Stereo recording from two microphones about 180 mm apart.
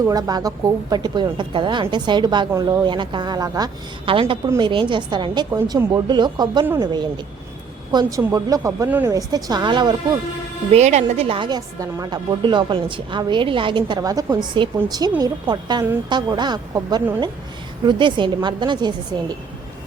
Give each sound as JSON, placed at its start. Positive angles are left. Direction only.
{"t": 0.0, "sound": "a woman's voice", "side_deg": -20}
{"t": 10.7, "sound": "a woman's voice", "side_deg": -40}